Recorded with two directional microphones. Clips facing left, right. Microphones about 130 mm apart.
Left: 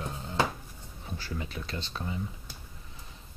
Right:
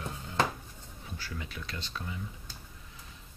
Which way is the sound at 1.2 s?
30° left (ahead or behind).